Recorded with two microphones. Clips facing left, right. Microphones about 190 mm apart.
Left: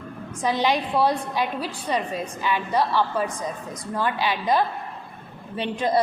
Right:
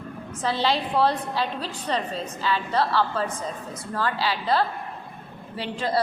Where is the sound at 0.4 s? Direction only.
15° left (ahead or behind).